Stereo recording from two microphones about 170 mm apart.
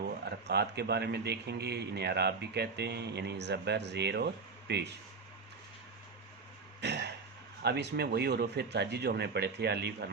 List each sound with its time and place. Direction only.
0.0 s a man's voice: 75° right (ahead or behind)
4.7 s speech: 90° right
6.8 s cough: 85° right
7.6 s a man's voice: 85° right